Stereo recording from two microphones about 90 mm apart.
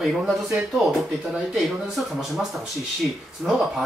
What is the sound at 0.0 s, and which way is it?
Speech, 5° right (ahead or behind).